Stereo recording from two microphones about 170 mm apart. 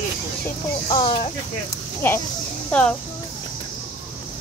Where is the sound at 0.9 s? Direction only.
25° left (ahead or behind).